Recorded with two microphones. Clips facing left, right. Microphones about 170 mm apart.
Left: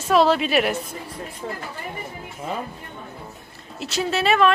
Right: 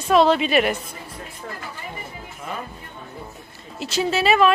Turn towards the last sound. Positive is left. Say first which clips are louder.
# right 1 dB
turn(degrees=0)  # may be behind; listen again after turning